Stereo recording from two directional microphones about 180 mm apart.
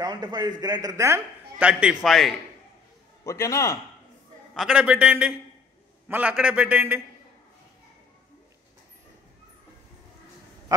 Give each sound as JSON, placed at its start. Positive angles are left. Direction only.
{"t": 0.0, "sound": "a man's voice", "side_deg": -25}
{"t": 3.3, "sound": "a man's voice", "side_deg": 15}
{"t": 4.6, "sound": "a man's voice", "side_deg": -5}